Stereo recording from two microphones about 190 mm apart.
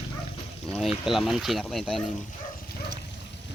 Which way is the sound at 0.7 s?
Centre (ahead or behind).